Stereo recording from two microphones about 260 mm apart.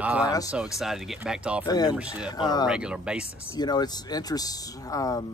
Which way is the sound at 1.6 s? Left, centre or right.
Centre.